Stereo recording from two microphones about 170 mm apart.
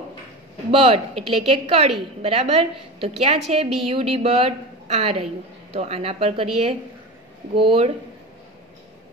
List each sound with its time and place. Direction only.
0.7 s a woman's voice: 35° right (ahead or behind)